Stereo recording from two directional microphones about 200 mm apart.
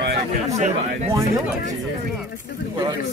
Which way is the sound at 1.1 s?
15° right (ahead or behind).